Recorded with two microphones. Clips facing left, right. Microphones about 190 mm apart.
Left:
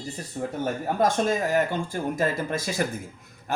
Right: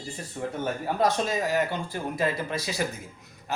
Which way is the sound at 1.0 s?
50° left (ahead or behind).